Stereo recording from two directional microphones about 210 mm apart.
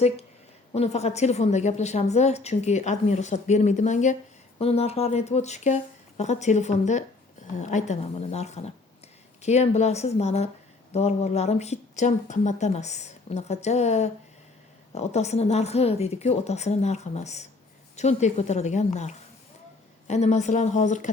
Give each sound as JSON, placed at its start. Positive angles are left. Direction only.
{"t": 0.7, "sound": "a woman's voice", "side_deg": 30}